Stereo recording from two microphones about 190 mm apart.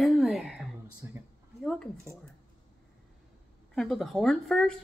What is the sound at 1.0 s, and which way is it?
Speech, 15° right (ahead or behind).